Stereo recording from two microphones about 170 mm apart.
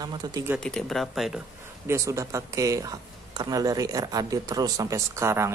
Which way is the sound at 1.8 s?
15° right (ahead or behind).